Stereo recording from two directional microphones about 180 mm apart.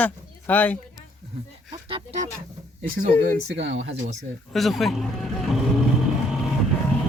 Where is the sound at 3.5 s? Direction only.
80° right.